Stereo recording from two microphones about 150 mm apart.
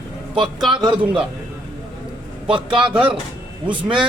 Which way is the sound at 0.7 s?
30° right (ahead or behind).